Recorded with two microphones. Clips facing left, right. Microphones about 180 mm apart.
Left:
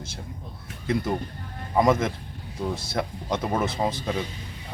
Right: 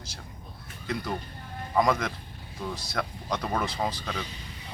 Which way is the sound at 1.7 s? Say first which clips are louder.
Left 4 dB; 25° left (ahead or behind).